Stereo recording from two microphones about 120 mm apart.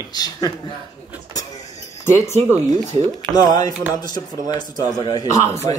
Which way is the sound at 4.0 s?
35° left (ahead or behind).